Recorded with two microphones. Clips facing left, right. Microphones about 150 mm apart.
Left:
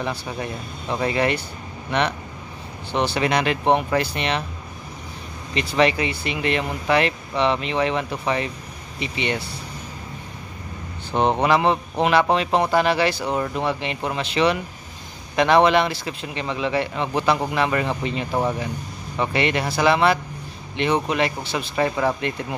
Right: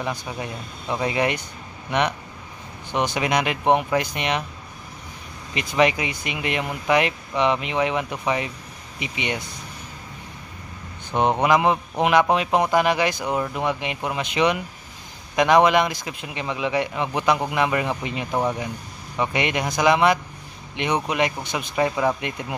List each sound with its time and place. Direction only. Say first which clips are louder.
0.0 s speech: left 1 dB; 10° right (ahead or behind)
5.8 s speech: even; 15° right (ahead or behind)
11.1 s speech: even; 10° right (ahead or behind)
18.3 s speech: even; 5° left (ahead or behind)
19.1 s speech: left 2 dB; 10° right (ahead or behind)